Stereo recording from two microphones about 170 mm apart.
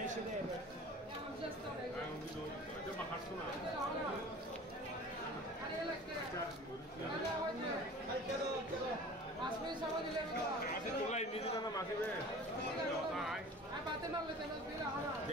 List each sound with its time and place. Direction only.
11.1 s a man's voice: 40° left (ahead or behind)